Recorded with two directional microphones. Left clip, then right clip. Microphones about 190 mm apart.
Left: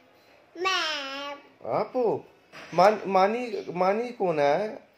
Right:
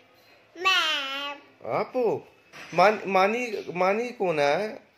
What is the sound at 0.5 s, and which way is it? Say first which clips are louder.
Babbling: right 4 dB; 15° left (ahead or behind).